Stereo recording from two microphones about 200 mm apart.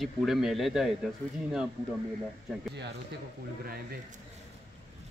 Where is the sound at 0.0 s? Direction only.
Centre (ahead or behind).